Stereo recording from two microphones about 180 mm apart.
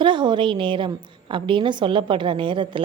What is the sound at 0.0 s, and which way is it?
A woman's voice, 25° right (ahead or behind).